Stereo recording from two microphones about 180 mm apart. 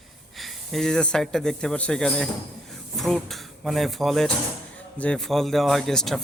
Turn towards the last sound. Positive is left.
turn(degrees=0)  # may be behind; listen again after turning